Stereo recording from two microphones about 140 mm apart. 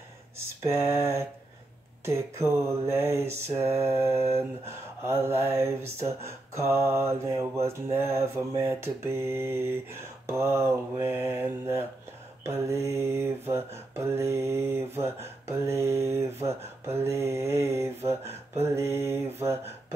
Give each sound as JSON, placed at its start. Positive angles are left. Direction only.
{"t": 0.7, "sound": "mantra", "side_deg": -20}